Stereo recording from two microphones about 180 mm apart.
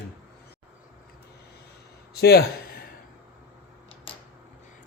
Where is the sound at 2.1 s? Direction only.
60° left (ahead or behind).